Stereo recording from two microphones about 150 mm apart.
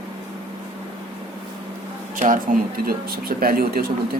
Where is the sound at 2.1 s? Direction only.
60° right (ahead or behind).